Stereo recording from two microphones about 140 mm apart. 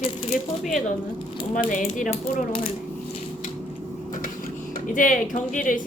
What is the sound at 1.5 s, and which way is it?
Speech, 65° left (ahead or behind).